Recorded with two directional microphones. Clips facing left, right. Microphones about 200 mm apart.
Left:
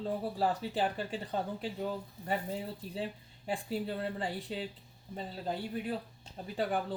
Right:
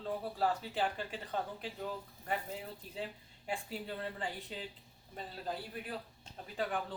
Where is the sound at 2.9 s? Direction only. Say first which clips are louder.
Left 4 dB; 35° left (ahead or behind).